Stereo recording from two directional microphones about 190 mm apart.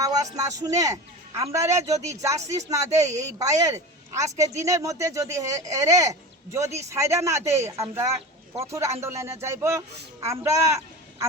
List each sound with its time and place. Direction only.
0.0 s a man's voice: 20° right (ahead or behind)